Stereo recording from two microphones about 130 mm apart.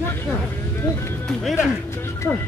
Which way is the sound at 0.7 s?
20° left (ahead or behind).